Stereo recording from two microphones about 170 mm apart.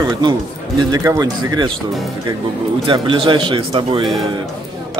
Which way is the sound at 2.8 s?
30° right (ahead or behind).